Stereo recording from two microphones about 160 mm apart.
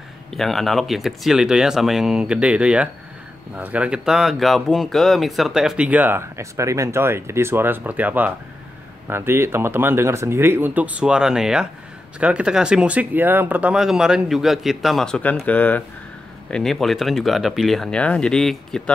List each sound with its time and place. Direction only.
0.3 s speech: centre (ahead or behind)